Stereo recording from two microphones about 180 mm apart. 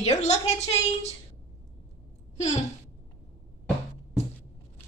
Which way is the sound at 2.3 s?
40° left (ahead or behind).